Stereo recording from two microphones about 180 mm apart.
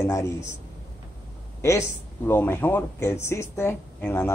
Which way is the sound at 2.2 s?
10° left (ahead or behind).